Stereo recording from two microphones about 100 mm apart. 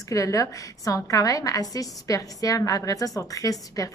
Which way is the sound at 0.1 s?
35° left (ahead or behind).